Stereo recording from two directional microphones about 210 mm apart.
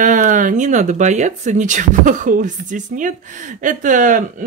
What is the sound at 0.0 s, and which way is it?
Speech, 40° right (ahead or behind).